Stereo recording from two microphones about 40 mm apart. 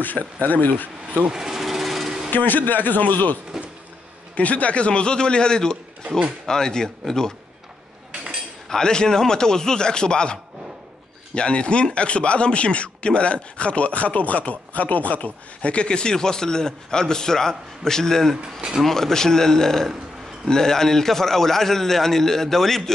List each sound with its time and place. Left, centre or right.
0.4 s a man's voice: left
1.3 s vehicle: centre
2.3 s a man's voice: left
3.6 s a sound: centre
4.4 s speech: left; by 5.8 s centre
6.0 s speech: right
6.4 s a man's voice: centre
8.6 s a man's voice: centre